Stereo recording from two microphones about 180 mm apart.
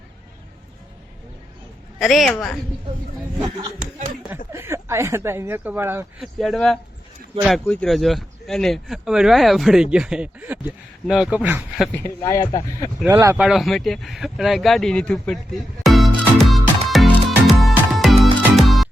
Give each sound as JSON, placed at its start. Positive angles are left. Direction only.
{"t": 2.0, "sound": "a man's voice", "side_deg": 0}
{"t": 4.5, "sound": "speech", "side_deg": -15}
{"t": 6.4, "sound": "a man's voice", "side_deg": 0}
{"t": 11.9, "sound": "speech", "side_deg": 15}
{"t": 13.1, "sound": "speech", "side_deg": -15}
{"t": 13.4, "sound": "a sound", "side_deg": 0}
{"t": 18.5, "sound": "music", "side_deg": 0}